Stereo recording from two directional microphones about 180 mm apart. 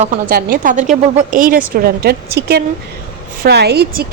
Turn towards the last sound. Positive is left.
turn(degrees=-65)  # may be behind; listen again after turning